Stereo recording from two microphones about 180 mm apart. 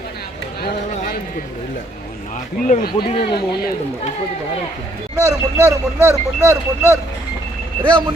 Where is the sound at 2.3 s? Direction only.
45° left (ahead or behind).